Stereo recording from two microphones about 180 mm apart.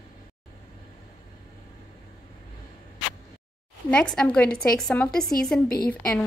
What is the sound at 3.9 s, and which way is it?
A woman's voice, 5° left (ahead or behind).